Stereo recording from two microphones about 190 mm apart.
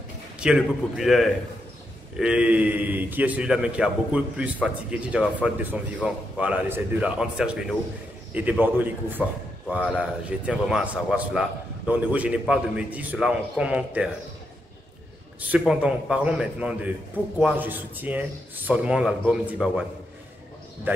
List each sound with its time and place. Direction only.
0.4 s a man's voice: 5° right (ahead or behind)
15.5 s a man's voice: 5° right (ahead or behind)